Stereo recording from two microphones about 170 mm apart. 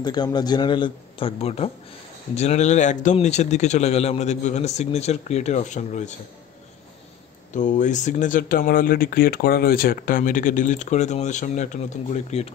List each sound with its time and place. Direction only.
0.0 s a man's voice: 25° left (ahead or behind); by 6.1 s 45° left (ahead or behind)
7.5 s speech: 45° left (ahead or behind)